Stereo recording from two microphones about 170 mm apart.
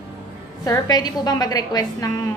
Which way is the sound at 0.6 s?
20° left (ahead or behind).